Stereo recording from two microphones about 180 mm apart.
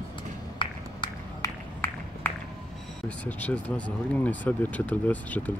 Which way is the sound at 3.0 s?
10° left (ahead or behind).